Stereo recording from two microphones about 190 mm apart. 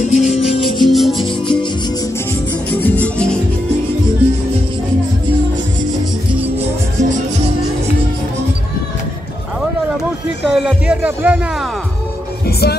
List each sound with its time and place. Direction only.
0.0 s music: 35° left (ahead or behind)
0.8 s music: centre (ahead or behind)
2.7 s music: 10° left (ahead or behind)
7.0 s music: 40° right (ahead or behind)
10.5 s speech: 5° right (ahead or behind)
12.4 s music: 55° left (ahead or behind)